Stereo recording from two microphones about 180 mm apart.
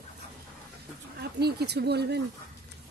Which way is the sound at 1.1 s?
65° right (ahead or behind).